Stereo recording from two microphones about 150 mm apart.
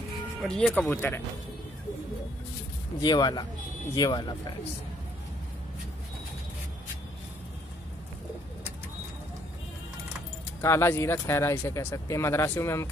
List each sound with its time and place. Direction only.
0.4 s speech: 5° left (ahead or behind)
3.0 s speech: 30° left (ahead or behind)
10.6 s speech: 15° left (ahead or behind)